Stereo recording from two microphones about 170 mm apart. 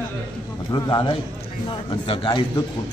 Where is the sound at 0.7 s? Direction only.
30° left (ahead or behind).